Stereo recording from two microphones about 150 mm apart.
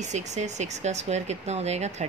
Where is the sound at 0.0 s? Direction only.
50° right (ahead or behind).